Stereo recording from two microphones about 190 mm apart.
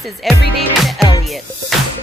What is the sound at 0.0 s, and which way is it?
Speech, centre (ahead or behind).